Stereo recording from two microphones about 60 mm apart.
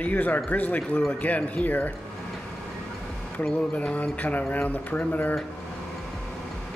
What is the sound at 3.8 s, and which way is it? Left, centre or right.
Speech, left.